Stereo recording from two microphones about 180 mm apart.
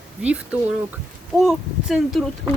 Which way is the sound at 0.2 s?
5° right (ahead or behind).